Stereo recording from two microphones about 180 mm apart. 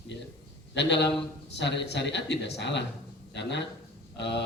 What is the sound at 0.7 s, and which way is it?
A man's voice, 75° left (ahead or behind).